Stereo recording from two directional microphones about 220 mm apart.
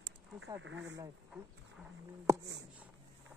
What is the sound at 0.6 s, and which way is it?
Speech, 55° right (ahead or behind).